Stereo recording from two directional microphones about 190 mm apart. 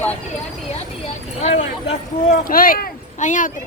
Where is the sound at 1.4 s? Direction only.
35° left (ahead or behind).